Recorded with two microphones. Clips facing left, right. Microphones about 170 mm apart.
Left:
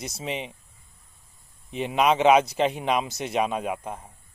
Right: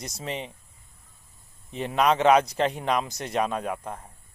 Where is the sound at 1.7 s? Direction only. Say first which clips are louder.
Left 1 dB; 15° left (ahead or behind).